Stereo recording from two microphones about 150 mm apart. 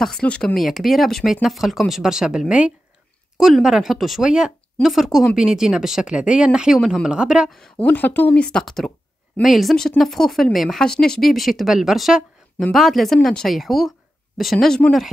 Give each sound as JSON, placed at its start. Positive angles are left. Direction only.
{"t": 0.0, "sound": "speech", "side_deg": 5}